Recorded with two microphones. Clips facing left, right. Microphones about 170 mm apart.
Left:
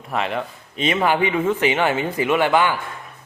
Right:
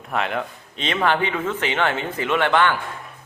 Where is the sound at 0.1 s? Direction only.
Centre (ahead or behind).